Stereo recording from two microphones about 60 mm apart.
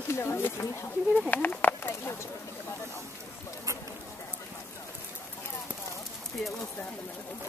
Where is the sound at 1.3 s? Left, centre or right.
Left.